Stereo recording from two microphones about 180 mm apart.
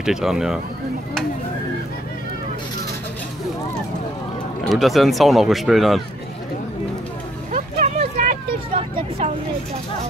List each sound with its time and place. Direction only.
0.0 s speech: centre (ahead or behind)
4.6 s speech: centre (ahead or behind)
7.5 s vehicle: 40° right (ahead or behind)